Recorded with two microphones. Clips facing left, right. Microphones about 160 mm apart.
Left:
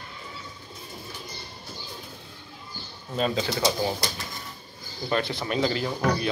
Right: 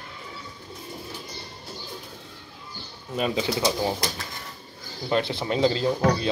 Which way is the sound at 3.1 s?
15° right (ahead or behind).